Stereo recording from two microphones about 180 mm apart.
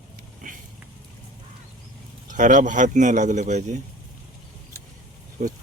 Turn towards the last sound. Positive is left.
turn(degrees=-40)  # may be behind; listen again after turning